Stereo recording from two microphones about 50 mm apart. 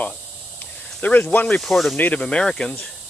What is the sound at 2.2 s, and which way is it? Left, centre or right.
Speech, centre.